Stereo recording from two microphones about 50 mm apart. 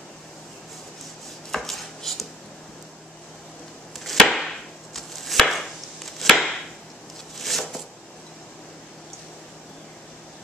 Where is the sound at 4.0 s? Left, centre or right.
Centre.